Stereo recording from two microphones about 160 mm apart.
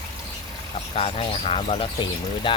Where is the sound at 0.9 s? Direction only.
40° left (ahead or behind).